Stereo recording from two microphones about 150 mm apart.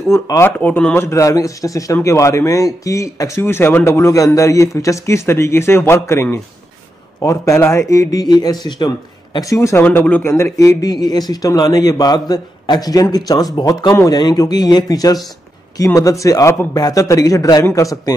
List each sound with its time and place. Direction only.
0.1 s a man's voice: 20° left (ahead or behind)